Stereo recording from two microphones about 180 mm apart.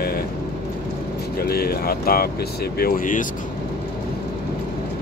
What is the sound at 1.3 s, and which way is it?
Speech, 60° left (ahead or behind).